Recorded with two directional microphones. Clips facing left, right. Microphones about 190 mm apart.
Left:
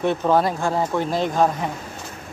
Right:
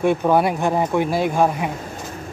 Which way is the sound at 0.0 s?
10° right (ahead or behind).